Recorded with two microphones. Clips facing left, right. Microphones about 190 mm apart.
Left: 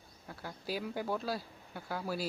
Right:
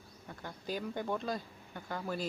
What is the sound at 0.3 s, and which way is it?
Speech, 5° left (ahead or behind).